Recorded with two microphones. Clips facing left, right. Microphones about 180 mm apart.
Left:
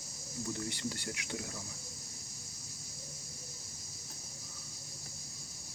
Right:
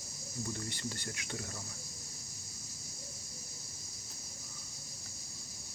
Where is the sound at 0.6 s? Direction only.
15° left (ahead or behind).